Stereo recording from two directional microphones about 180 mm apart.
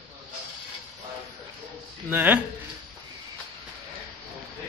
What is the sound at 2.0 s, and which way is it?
Speech, 10° right (ahead or behind).